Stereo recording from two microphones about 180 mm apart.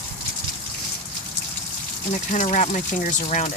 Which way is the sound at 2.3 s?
45° left (ahead or behind).